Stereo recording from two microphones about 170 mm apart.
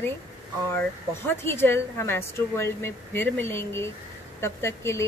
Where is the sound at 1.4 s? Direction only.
15° left (ahead or behind).